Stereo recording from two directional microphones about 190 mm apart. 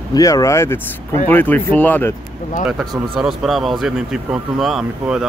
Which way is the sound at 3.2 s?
Centre (ahead or behind).